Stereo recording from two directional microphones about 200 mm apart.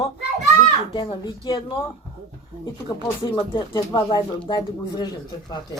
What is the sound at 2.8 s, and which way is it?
Speech, 25° left (ahead or behind).